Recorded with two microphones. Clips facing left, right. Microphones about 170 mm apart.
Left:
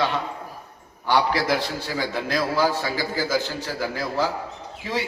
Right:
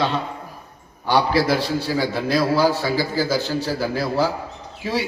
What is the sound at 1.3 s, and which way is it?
A man's voice, 20° left (ahead or behind).